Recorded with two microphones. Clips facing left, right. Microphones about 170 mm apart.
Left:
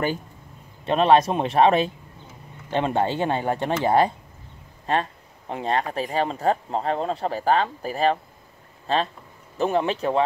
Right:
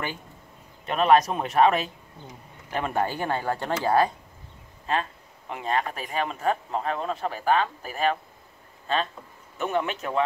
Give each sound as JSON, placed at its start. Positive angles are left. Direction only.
{"t": 0.8, "sound": "speech", "side_deg": 30}
{"t": 4.8, "sound": "speech", "side_deg": 35}